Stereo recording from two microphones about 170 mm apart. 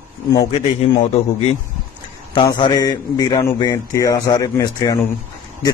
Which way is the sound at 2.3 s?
25° left (ahead or behind).